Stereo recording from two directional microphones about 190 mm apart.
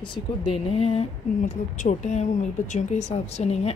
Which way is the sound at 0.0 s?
25° left (ahead or behind).